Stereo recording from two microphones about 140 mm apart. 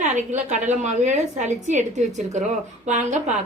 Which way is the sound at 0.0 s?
60° right (ahead or behind).